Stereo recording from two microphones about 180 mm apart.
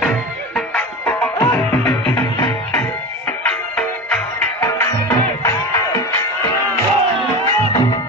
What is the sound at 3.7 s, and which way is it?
Music, 5° left (ahead or behind).